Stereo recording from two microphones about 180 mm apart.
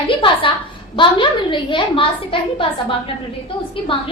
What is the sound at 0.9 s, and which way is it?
A woman's voice, 25° left (ahead or behind).